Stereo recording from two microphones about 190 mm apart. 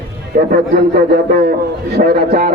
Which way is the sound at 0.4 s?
45° right (ahead or behind).